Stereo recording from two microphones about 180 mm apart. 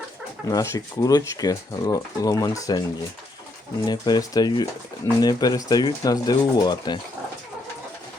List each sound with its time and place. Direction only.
0.5 s speech: 15° left (ahead or behind)
3.8 s speech: 20° left (ahead or behind)